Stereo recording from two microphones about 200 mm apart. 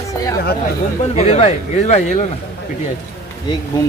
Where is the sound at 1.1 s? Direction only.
35° left (ahead or behind).